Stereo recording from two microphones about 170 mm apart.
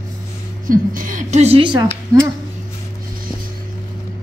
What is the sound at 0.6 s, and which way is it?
A woman's voice, 55° right (ahead or behind).